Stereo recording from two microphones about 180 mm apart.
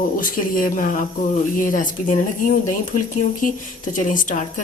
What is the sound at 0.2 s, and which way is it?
Speech, 50° left (ahead or behind).